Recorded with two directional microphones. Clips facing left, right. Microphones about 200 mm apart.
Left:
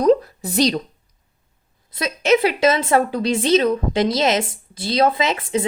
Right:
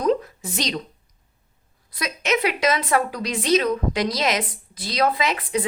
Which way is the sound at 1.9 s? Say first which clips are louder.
Left 7 dB; 25° left (ahead or behind).